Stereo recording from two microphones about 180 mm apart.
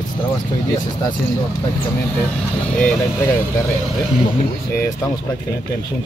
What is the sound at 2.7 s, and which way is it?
Speech, 10° left (ahead or behind).